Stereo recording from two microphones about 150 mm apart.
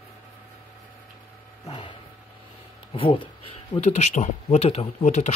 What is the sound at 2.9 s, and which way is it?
Speech, 40° left (ahead or behind).